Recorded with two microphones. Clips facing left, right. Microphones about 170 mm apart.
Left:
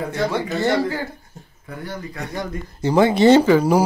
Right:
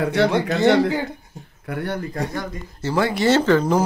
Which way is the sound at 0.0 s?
75° right (ahead or behind).